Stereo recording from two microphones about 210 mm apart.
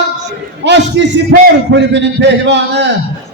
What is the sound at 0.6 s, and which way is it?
A man's voice, 55° right (ahead or behind).